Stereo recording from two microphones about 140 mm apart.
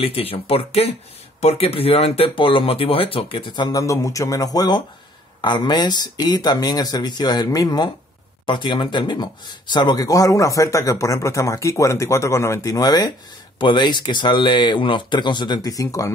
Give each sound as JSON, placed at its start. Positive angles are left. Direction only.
{"t": 0.0, "sound": "speech", "side_deg": 45}